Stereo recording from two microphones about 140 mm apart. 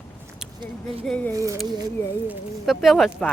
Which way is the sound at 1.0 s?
10° left (ahead or behind).